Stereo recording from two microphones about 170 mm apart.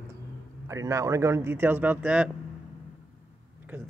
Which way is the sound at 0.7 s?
20° right (ahead or behind).